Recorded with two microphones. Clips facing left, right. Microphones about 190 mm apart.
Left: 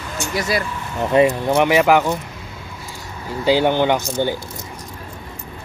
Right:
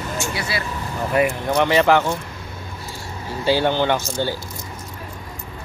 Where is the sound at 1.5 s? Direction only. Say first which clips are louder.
Left 1 dB; 10° left (ahead or behind).